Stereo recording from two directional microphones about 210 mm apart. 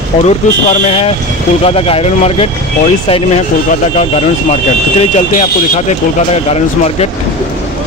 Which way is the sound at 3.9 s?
30° left (ahead or behind).